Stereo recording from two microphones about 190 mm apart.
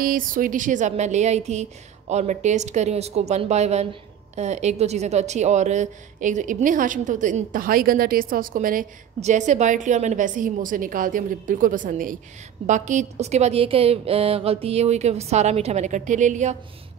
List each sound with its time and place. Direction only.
0.0 s a woman's voice: 45° right (ahead or behind)